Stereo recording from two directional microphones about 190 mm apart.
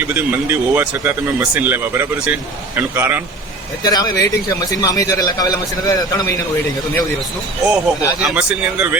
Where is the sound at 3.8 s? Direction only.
20° left (ahead or behind).